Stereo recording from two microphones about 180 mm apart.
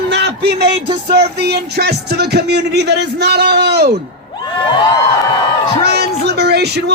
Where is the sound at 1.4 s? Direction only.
65° right (ahead or behind).